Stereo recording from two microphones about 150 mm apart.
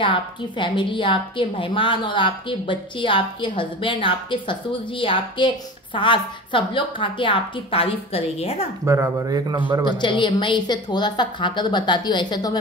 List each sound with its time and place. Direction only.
0.0 s a woman's voice: 35° left (ahead or behind)
8.8 s speech: 20° right (ahead or behind)
9.9 s a woman's voice: 35° left (ahead or behind)